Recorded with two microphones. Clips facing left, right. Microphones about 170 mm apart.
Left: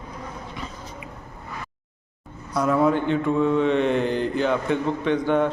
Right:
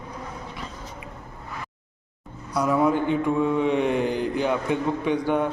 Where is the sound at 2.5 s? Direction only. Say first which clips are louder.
Left 1 dB; 5° right (ahead or behind).